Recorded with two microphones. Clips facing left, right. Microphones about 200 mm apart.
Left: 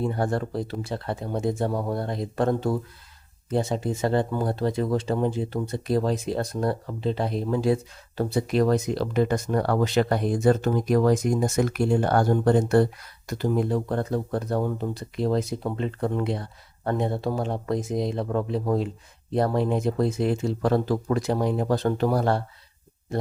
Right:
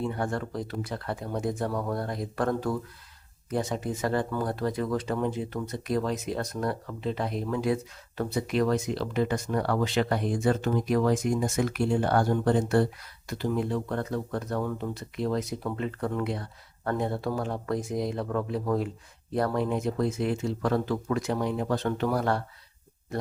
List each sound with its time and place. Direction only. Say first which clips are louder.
0.0 s speech: left 4 dB; 35° left (ahead or behind)